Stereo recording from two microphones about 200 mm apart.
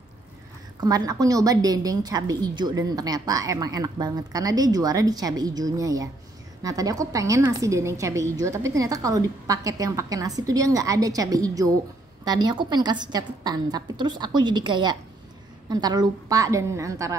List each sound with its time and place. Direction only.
0.7 s a woman's voice: 20° right (ahead or behind)